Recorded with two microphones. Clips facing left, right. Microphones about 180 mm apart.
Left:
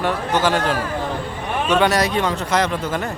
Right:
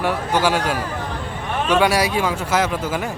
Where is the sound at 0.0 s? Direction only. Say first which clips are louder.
Even; 10° right (ahead or behind).